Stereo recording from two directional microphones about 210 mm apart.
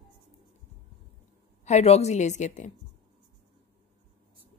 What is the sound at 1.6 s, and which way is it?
A woman's voice, 30° left (ahead or behind).